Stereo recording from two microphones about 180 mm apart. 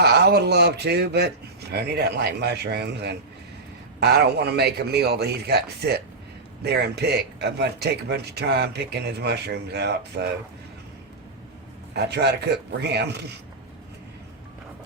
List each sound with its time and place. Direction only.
0.0 s a man's voice: 65° right (ahead or behind)
11.9 s a man's voice: 70° right (ahead or behind)